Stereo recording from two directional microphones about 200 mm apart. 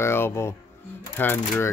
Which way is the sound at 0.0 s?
10° left (ahead or behind).